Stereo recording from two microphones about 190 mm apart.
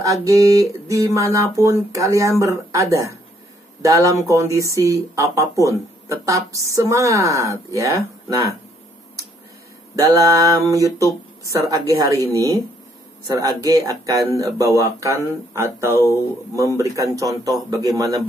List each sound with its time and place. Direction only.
0.0 s speech: 15° right (ahead or behind)
9.9 s a man's voice: 15° right (ahead or behind)